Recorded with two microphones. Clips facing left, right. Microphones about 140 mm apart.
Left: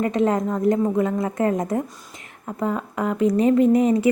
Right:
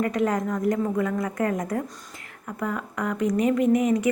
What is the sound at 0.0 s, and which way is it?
A woman's voice, 25° left (ahead or behind).